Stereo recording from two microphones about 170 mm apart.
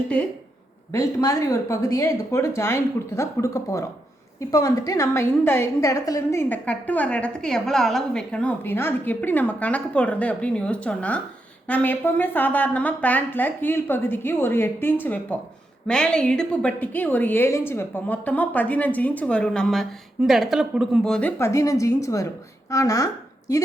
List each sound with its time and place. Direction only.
0.9 s a woman's voice: 20° left (ahead or behind)